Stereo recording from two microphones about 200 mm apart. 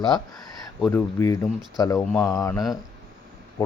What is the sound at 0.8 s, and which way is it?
Speech, 10° left (ahead or behind).